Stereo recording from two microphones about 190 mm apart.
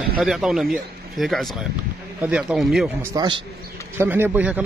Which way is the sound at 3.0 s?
25° right (ahead or behind).